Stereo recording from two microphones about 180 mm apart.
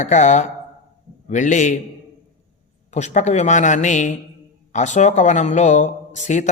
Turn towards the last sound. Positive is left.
turn(degrees=40)  # may be behind; listen again after turning